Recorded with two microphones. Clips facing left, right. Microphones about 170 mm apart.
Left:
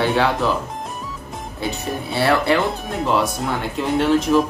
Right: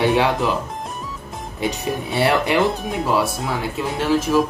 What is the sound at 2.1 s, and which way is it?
Speech, 15° right (ahead or behind).